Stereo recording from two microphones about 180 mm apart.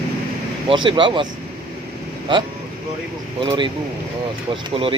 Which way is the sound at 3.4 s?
25° right (ahead or behind).